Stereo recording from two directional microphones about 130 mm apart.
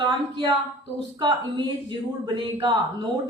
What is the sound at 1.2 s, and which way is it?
A woman's voice, 35° right (ahead or behind).